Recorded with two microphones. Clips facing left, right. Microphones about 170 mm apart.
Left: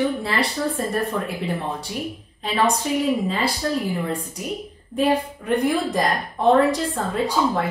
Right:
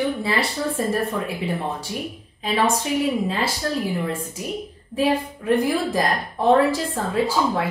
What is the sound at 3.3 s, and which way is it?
A woman's voice, centre (ahead or behind).